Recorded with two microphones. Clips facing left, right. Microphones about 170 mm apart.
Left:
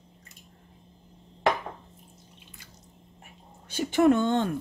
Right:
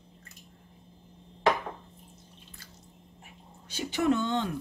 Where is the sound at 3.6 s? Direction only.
50° left (ahead or behind).